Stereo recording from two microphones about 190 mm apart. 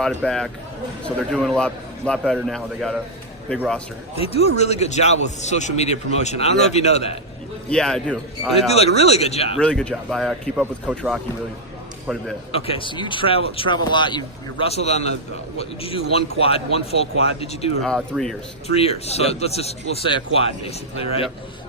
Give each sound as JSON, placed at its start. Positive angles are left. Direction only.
{"t": 0.0, "sound": "a man's voice", "side_deg": 5}
{"t": 4.1, "sound": "speech", "side_deg": 30}
{"t": 7.7, "sound": "a man's voice", "side_deg": 5}
{"t": 8.7, "sound": "speech", "side_deg": 35}
{"t": 9.6, "sound": "a man's voice", "side_deg": 5}
{"t": 12.5, "sound": "speech", "side_deg": 30}
{"t": 17.8, "sound": "a man's voice", "side_deg": 5}
{"t": 18.7, "sound": "speech", "side_deg": 30}